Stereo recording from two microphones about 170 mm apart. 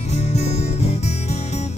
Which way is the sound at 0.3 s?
40° left (ahead or behind).